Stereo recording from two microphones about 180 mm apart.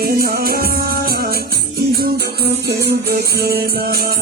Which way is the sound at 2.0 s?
60° right (ahead or behind).